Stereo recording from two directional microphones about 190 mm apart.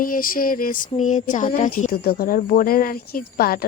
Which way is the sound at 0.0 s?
45° left (ahead or behind).